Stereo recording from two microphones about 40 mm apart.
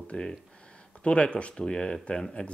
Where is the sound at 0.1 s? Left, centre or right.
Left.